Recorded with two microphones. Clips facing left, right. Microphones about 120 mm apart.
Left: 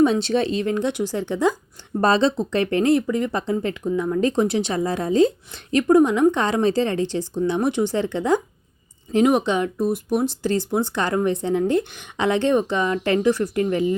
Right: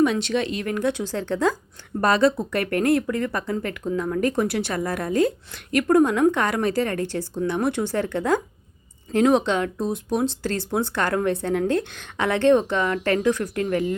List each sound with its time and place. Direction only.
0.0 s speech: 30° left (ahead or behind); by 1.5 s 15° left (ahead or behind)
2.0 s speech: 30° left (ahead or behind)
3.8 s speech: 10° left (ahead or behind)
4.2 s speech: 20° left (ahead or behind)